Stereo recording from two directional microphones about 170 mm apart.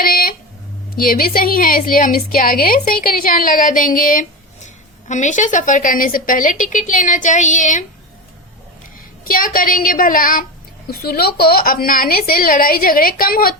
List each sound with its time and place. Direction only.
0.0 s a sound: 60° left (ahead or behind)
0.9 s a woman's voice: 55° left (ahead or behind)
9.2 s speech: 55° left (ahead or behind)